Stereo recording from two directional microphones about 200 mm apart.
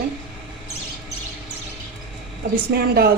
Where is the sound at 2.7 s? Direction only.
50° right (ahead or behind).